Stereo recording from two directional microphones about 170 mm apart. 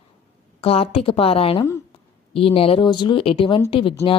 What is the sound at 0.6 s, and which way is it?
A woman's voice, 35° left (ahead or behind).